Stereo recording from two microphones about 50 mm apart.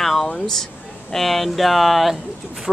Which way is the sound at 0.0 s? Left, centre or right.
Centre.